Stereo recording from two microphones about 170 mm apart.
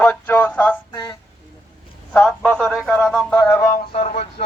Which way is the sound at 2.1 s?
5° left (ahead or behind).